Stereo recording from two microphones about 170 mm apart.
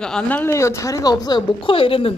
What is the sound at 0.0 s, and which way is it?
Speech, 5° left (ahead or behind).